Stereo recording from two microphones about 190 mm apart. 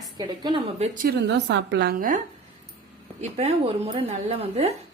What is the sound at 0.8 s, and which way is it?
A woman's voice, 50° right (ahead or behind).